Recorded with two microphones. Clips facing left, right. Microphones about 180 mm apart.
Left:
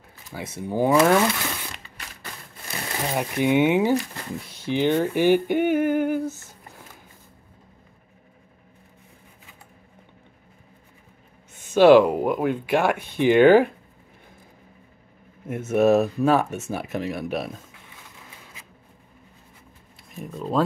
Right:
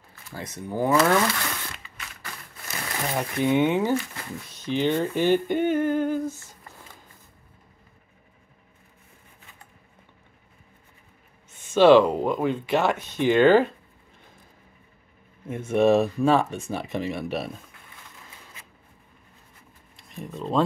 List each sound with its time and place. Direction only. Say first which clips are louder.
0.6 s speech: left 3 dB; 15° left (ahead or behind)
3.0 s speech: left 2 dB; 10° left (ahead or behind)
3.9 s speech: left 3 dB; 35° left (ahead or behind)
4.5 s speech: left 2 dB; 10° left (ahead or behind)
11.7 s speech: left 2 dB; 10° left (ahead or behind)
15.4 s speech: left 1 dB; 5° left (ahead or behind)
20.0 s speech: left 1 dB; centre (ahead or behind)